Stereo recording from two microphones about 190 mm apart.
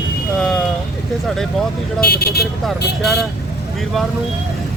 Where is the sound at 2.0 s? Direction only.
55° left (ahead or behind).